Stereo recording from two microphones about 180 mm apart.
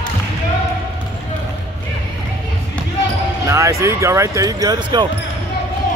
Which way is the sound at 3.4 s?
15° right (ahead or behind).